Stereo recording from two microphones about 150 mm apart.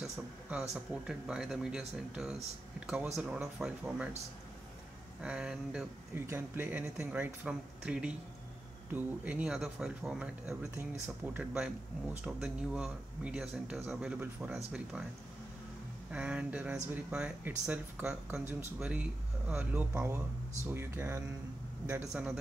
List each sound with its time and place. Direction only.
0.0 s speech: 5° right (ahead or behind)
5.2 s speech: 5° right (ahead or behind)
6.1 s speech: 15° right (ahead or behind)
16.1 s speech: 5° right (ahead or behind)
22.1 s speech: 5° right (ahead or behind)